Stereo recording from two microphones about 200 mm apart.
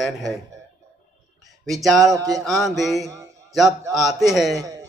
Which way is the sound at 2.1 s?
15° right (ahead or behind).